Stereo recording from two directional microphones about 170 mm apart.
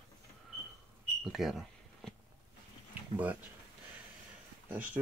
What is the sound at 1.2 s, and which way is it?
Smoke detector, centre (ahead or behind).